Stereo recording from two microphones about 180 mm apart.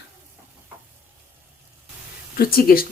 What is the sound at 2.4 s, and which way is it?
Speech, 55° left (ahead or behind).